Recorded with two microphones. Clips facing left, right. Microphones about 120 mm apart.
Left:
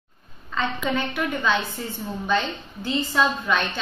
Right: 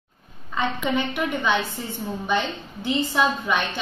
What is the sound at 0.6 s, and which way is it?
A woman's voice, 15° right (ahead or behind).